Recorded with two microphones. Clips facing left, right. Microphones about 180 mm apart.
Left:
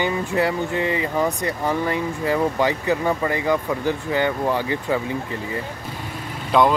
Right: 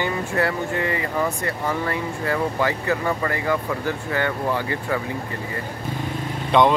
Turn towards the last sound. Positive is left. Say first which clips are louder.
# even
turn(degrees=0)  # may be behind; listen again after turning